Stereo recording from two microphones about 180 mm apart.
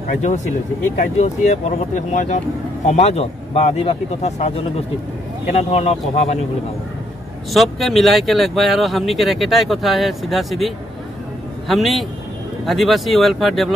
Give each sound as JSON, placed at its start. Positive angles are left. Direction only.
{"t": 0.1, "sound": "speech", "side_deg": 40}
{"t": 7.5, "sound": "speech", "side_deg": 0}